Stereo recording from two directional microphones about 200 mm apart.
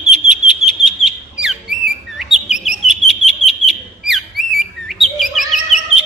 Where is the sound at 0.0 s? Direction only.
5° right (ahead or behind).